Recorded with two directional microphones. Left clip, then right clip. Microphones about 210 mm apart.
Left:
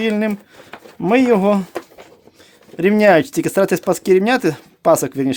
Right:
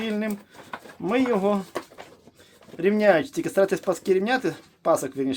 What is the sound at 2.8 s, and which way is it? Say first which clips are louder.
Speech: left 7 dB; 55° left (ahead or behind).